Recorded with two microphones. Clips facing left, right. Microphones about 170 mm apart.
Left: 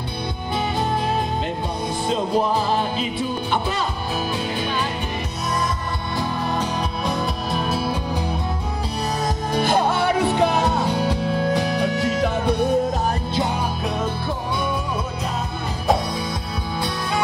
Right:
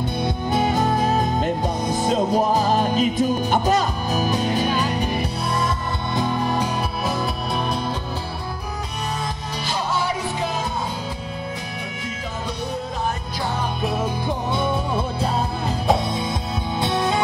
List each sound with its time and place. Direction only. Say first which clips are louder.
0.5 s music: right 3 dB; 45° right (ahead or behind)
9.6 s music: left 6 dB; 55° left (ahead or behind); by 12.5 s 75° left (ahead or behind)
16.8 s music: right 5 dB; 25° right (ahead or behind)